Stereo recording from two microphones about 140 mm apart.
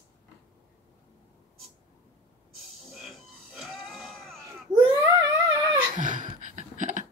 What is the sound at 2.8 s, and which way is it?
Sheep, centre (ahead or behind).